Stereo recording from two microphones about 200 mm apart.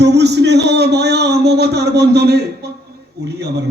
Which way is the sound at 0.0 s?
55° right (ahead or behind).